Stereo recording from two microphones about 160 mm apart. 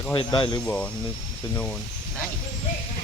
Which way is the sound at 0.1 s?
25° left (ahead or behind).